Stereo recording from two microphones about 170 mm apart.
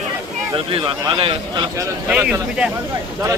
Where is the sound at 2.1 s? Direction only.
10° right (ahead or behind).